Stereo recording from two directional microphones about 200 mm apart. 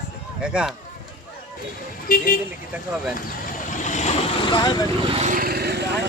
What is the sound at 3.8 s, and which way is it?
Vehicle, 35° left (ahead or behind).